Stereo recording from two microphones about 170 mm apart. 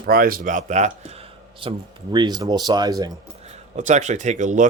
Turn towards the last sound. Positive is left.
turn(degrees=-45)  # may be behind; listen again after turning